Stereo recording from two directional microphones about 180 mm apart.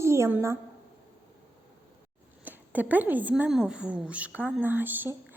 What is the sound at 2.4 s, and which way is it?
Speech, 10° right (ahead or behind).